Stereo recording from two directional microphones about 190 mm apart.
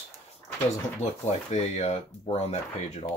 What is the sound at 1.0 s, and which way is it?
Speech, 35° left (ahead or behind).